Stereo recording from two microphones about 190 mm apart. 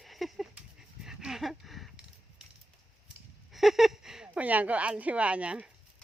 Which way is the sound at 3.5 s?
Centre (ahead or behind).